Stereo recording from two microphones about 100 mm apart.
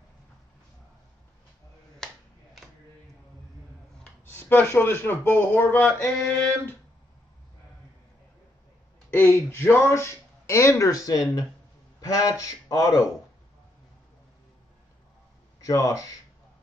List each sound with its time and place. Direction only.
2.0 s a sound: 5° left (ahead or behind)
4.3 s speech: 20° left (ahead or behind)
9.1 s a man's voice: 25° left (ahead or behind)
15.6 s a man's voice: 35° left (ahead or behind)